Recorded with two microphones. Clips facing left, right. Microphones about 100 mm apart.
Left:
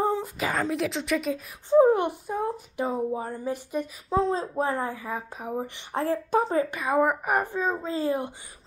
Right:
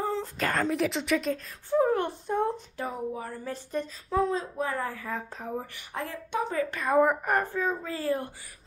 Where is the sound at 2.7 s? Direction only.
25° left (ahead or behind).